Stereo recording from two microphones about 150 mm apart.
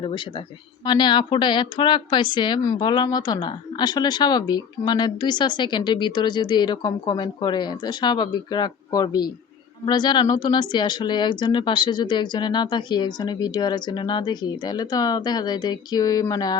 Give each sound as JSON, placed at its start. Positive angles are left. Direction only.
{"t": 0.9, "sound": "speech", "side_deg": 30}